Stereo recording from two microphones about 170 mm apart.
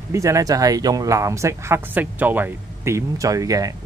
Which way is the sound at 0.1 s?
20° right (ahead or behind).